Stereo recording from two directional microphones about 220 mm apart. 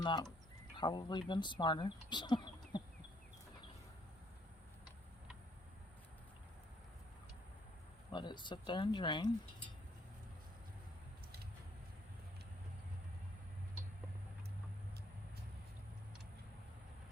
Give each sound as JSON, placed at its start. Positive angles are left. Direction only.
{"t": 0.0, "sound": "speech", "side_deg": 20}
{"t": 8.1, "sound": "speech", "side_deg": 20}